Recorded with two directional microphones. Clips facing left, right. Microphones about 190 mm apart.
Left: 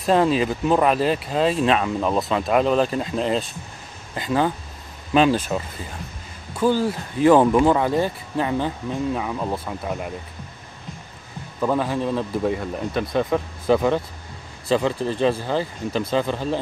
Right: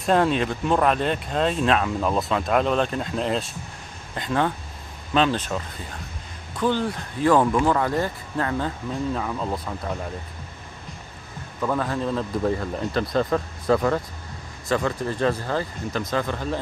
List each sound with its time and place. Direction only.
0.0 s speech: centre (ahead or behind)
7.2 s speech: 20° left (ahead or behind)
11.6 s speech: 10° left (ahead or behind)